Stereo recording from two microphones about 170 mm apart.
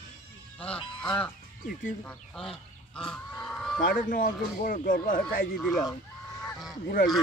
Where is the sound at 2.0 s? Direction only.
5° left (ahead or behind).